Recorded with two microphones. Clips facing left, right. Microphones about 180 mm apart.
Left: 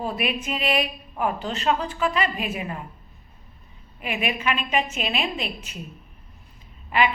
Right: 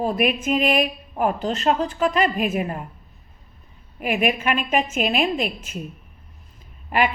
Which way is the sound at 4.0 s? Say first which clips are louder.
Right 5 dB; 50° right (ahead or behind).